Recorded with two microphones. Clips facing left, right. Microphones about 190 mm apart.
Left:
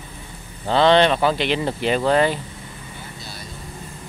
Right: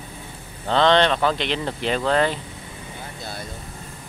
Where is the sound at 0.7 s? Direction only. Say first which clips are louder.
Left 2 dB; 10° left (ahead or behind).